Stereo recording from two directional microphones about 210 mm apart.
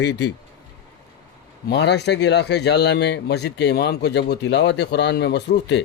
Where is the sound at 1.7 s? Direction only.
55° left (ahead or behind).